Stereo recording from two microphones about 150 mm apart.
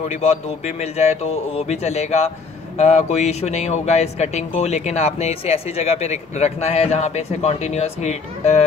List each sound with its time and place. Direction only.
0.1 s speech: 45° left (ahead or behind)